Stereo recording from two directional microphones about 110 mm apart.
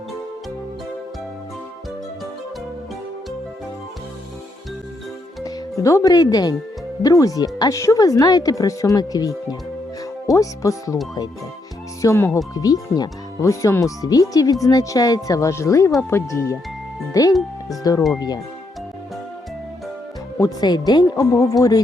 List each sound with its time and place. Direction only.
5.4 s speech: 30° left (ahead or behind)
12.0 s speech: 25° left (ahead or behind)
20.4 s speech: 40° left (ahead or behind)